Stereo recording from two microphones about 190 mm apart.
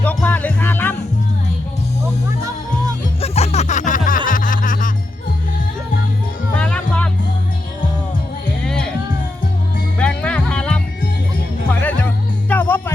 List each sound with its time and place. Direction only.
0.0 s music: 10° left (ahead or behind)
3.2 s music: 35° left (ahead or behind)
6.5 s music: 5° left (ahead or behind)
8.6 s music: 5° left (ahead or behind)
10.0 s music: 5° left (ahead or behind)